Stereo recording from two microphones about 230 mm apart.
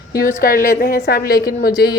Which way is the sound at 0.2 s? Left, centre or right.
Left.